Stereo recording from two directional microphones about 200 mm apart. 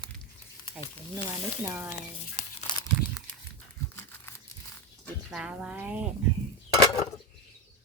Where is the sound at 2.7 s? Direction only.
20° left (ahead or behind).